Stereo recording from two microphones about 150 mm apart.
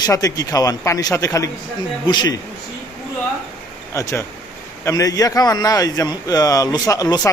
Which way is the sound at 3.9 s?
20° left (ahead or behind).